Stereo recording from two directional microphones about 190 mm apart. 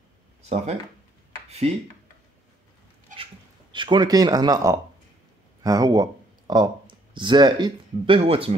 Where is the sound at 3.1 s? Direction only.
40° right (ahead or behind).